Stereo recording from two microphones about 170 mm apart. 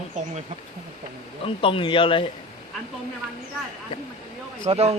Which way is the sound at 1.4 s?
30° left (ahead or behind).